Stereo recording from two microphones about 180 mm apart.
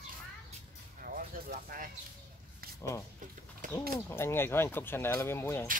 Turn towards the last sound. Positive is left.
turn(degrees=15)  # may be behind; listen again after turning